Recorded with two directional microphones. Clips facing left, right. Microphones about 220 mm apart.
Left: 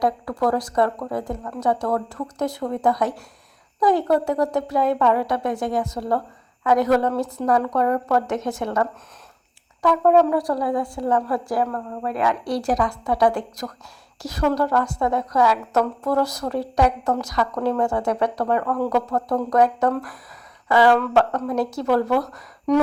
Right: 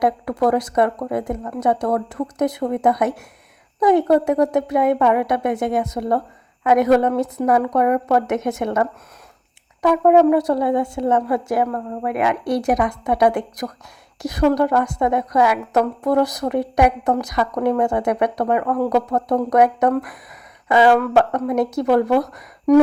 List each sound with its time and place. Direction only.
0.0 s a woman's voice: 20° right (ahead or behind)